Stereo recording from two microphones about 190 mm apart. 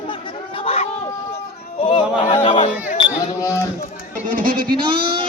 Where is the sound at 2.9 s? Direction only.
20° left (ahead or behind).